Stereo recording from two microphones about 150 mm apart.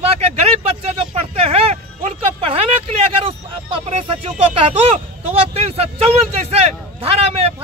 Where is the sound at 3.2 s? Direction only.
40° right (ahead or behind).